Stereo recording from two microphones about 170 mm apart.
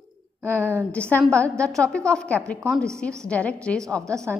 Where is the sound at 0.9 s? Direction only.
5° left (ahead or behind).